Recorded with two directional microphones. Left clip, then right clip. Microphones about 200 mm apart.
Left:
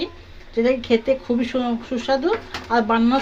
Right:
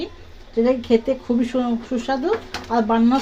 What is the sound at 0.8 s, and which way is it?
Speech, 15° right (ahead or behind).